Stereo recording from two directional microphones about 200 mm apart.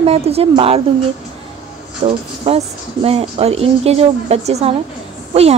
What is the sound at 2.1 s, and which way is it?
A woman's voice, 30° right (ahead or behind).